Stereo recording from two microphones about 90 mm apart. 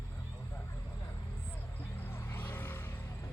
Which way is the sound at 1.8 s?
25° left (ahead or behind).